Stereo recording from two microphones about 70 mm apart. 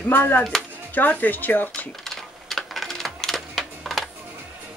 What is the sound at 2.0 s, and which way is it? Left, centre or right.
Typewriter, centre.